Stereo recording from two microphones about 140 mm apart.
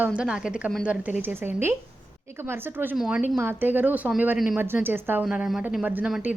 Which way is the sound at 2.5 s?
15° right (ahead or behind).